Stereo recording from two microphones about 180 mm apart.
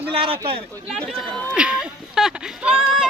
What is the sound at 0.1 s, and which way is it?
Speech, 30° right (ahead or behind).